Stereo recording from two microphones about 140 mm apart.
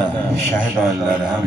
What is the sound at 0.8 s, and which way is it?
Speech, 5° right (ahead or behind).